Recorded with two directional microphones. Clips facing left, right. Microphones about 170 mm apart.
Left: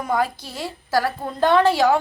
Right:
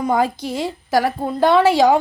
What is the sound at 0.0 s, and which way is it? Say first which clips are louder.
A woman's voice: right 4 dB; 20° right (ahead or behind).